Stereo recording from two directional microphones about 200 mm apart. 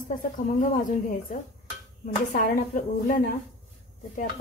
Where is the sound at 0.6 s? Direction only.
40° left (ahead or behind).